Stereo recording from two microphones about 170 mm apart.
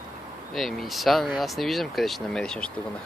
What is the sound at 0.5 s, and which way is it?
Speech, centre (ahead or behind).